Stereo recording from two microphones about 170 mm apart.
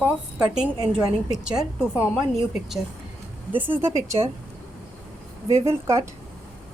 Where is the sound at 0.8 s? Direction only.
25° right (ahead or behind).